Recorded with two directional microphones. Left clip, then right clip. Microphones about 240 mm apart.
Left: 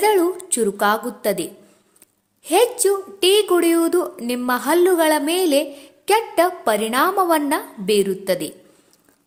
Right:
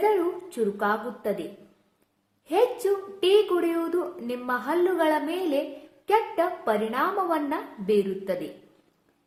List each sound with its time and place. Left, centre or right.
0.0 s a woman's voice: left
2.5 s a woman's voice: left